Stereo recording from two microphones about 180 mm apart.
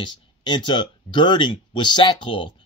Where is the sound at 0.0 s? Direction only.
25° left (ahead or behind).